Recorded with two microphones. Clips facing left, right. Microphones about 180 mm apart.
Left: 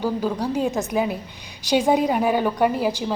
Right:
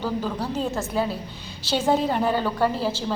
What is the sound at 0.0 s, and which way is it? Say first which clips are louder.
A woman's voice: left 4 dB; 10° left (ahead or behind).